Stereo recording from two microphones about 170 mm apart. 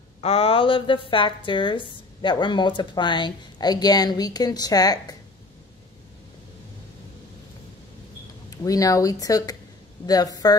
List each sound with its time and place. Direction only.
0.2 s a woman's voice: 35° left (ahead or behind)
8.5 s a woman's voice: 20° left (ahead or behind)